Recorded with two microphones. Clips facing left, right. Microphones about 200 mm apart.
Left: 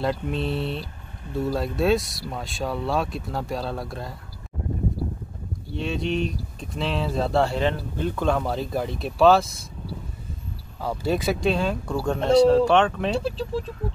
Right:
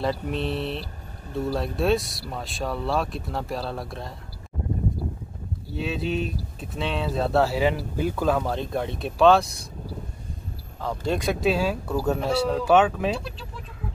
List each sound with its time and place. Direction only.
0.0 s speech: centre (ahead or behind)
5.8 s speech: 5° right (ahead or behind)
10.8 s speech: 5° left (ahead or behind)
13.2 s speech: 30° left (ahead or behind)